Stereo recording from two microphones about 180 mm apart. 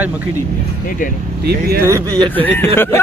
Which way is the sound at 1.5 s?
60° right (ahead or behind).